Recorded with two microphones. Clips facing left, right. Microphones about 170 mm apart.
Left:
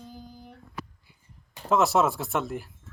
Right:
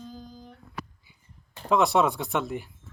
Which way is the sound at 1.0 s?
Centre (ahead or behind).